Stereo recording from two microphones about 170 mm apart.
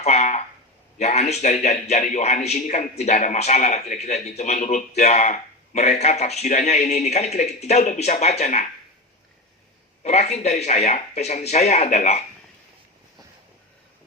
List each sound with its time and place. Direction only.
0.0 s a sound: 40° left (ahead or behind)
0.9 s a man's voice: 40° left (ahead or behind)
10.0 s a man's voice: 40° left (ahead or behind)